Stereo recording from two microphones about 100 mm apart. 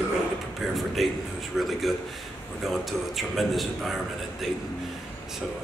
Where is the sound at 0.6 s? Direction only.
Centre (ahead or behind).